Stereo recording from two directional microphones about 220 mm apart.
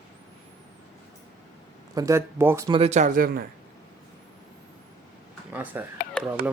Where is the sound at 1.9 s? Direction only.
15° right (ahead or behind).